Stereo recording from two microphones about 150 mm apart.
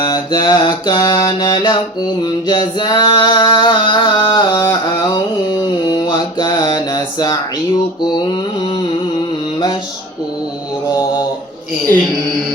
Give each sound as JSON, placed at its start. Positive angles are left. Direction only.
{"t": 0.0, "sound": "mantra", "side_deg": 25}
{"t": 2.5, "sound": "singing", "side_deg": 30}